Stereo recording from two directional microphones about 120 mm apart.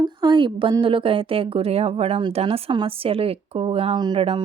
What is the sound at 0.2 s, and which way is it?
Speech, 40° right (ahead or behind).